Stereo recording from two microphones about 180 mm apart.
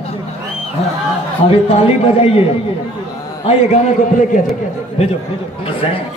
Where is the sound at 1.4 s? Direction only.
35° left (ahead or behind).